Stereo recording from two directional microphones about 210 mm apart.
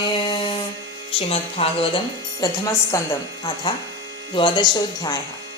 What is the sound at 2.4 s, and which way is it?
A woman's voice, 15° left (ahead or behind).